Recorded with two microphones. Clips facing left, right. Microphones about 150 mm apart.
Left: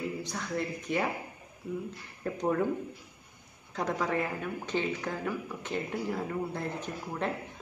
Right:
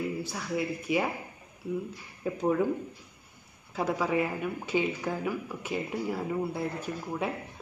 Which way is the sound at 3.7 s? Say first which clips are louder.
Right 3 dB; 5° right (ahead or behind).